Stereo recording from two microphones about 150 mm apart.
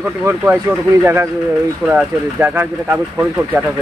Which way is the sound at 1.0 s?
15° right (ahead or behind).